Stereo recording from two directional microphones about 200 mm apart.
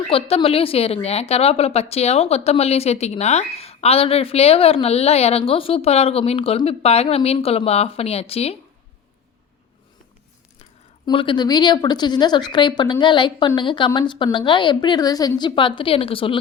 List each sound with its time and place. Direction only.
0.1 s a woman's voice: 30° left (ahead or behind)
10.6 s speech: 25° left (ahead or behind)